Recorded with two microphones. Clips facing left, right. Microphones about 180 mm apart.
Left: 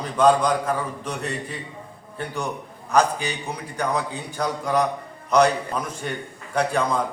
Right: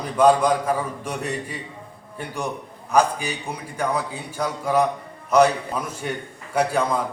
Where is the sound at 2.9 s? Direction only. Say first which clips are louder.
Right 1 dB; 10° right (ahead or behind).